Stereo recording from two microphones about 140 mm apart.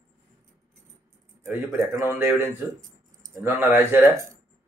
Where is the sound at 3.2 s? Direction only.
15° right (ahead or behind).